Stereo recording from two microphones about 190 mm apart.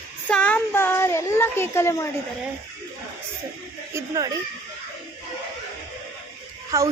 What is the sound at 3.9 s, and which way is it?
Speech, 15° right (ahead or behind).